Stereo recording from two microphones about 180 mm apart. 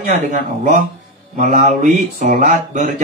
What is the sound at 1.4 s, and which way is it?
Speech, 40° right (ahead or behind).